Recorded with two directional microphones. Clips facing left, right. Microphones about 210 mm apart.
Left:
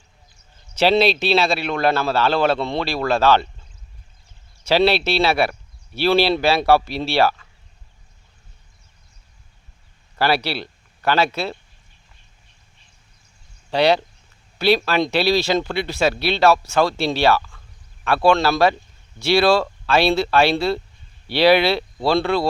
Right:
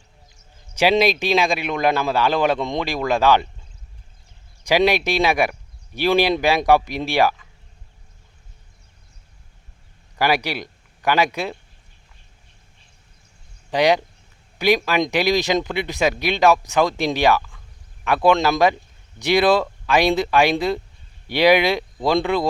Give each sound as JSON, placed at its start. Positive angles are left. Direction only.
{"t": 0.7, "sound": "speech", "side_deg": -10}
{"t": 4.6, "sound": "speech", "side_deg": -15}
{"t": 10.2, "sound": "speech", "side_deg": -15}
{"t": 13.7, "sound": "speech", "side_deg": -15}